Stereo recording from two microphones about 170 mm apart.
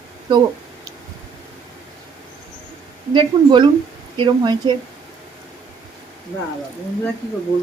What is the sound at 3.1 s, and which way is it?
Speech, 30° right (ahead or behind).